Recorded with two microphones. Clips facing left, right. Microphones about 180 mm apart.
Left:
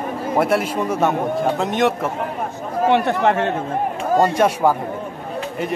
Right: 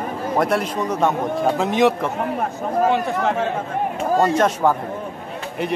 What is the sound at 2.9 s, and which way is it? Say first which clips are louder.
Speech: left 3 dB; 70° left (ahead or behind).